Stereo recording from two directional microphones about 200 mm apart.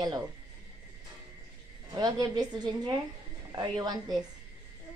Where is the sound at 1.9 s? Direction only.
20° right (ahead or behind).